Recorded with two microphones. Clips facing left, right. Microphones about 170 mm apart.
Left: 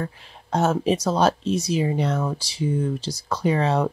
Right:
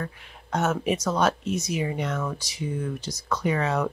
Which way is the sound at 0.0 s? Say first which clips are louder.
Left 4 dB; 30° left (ahead or behind).